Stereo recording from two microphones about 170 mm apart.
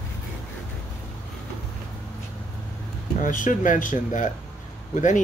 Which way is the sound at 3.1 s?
50° left (ahead or behind).